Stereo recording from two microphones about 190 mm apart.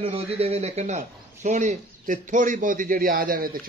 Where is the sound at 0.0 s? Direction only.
30° right (ahead or behind).